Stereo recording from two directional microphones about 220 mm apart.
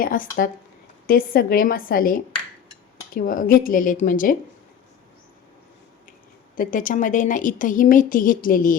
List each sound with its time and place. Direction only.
0.0 s a woman's voice: 40° left (ahead or behind)
6.6 s a woman's voice: 35° left (ahead or behind)